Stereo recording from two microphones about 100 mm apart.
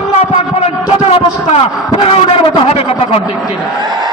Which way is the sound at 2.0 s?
70° left (ahead or behind).